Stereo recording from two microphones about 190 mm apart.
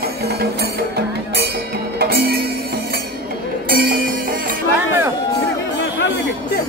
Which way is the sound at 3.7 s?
50° right (ahead or behind).